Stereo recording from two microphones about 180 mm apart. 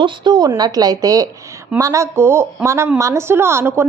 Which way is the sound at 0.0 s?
25° right (ahead or behind).